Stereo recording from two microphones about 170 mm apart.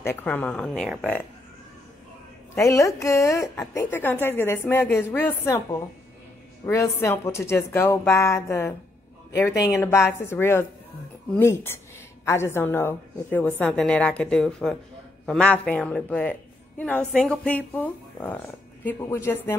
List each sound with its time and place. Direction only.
0.0 s a woman's voice: 10° left (ahead or behind)
2.5 s a woman's voice: 20° left (ahead or behind)